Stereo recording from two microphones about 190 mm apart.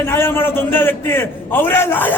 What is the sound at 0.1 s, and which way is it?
A man's voice, 10° left (ahead or behind).